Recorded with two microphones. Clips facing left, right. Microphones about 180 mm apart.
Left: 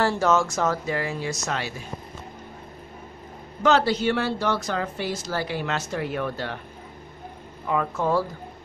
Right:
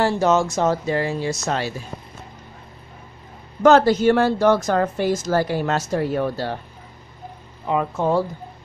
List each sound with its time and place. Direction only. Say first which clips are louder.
0.0 s speech: right 3 dB; 20° right (ahead or behind)
3.6 s a woman's voice: right 7 dB; 45° right (ahead or behind)
7.6 s speech: right 3 dB; 20° right (ahead or behind)